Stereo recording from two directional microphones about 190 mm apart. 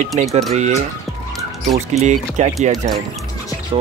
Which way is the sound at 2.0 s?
40° right (ahead or behind).